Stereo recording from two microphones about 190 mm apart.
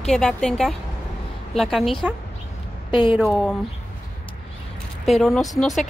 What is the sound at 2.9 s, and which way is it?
Speech, 25° left (ahead or behind).